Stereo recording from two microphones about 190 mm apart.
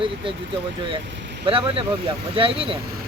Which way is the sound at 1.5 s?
30° right (ahead or behind).